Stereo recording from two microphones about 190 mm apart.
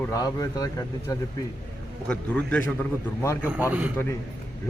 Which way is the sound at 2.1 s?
5° left (ahead or behind).